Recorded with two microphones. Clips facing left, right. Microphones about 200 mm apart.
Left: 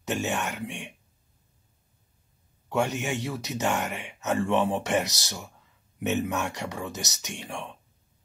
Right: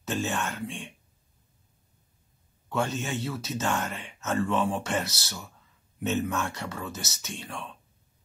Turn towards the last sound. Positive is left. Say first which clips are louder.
# left 2 dB
turn(degrees=15)  # may be behind; listen again after turning